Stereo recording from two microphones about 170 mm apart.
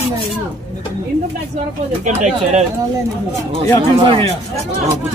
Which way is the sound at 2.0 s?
45° right (ahead or behind).